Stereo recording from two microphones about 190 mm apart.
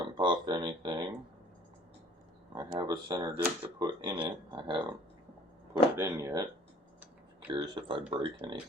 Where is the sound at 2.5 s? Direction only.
20° right (ahead or behind).